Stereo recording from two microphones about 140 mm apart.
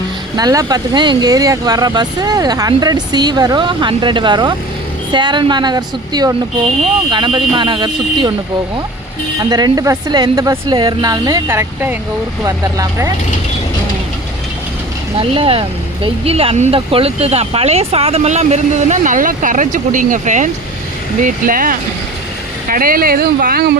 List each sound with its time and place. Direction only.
0.3 s a woman's voice: 25° right (ahead or behind)
9.4 s speech: 30° right (ahead or behind)
15.2 s a woman's voice: 40° right (ahead or behind); by 21.8 s 80° right
22.7 s speech: 90° right